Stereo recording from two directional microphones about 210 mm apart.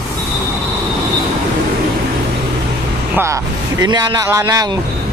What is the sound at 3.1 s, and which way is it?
Speech, 15° right (ahead or behind).